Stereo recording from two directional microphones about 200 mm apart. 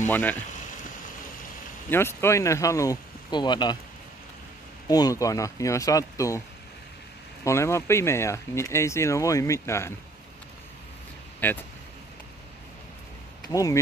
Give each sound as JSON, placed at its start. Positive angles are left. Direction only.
{"t": 0.1, "sound": "speech", "side_deg": 10}
{"t": 1.9, "sound": "speech", "side_deg": 10}
{"t": 4.8, "sound": "speech", "side_deg": 20}
{"t": 7.4, "sound": "speech", "side_deg": 15}
{"t": 11.3, "sound": "speech", "side_deg": 10}
{"t": 13.5, "sound": "speech", "side_deg": 15}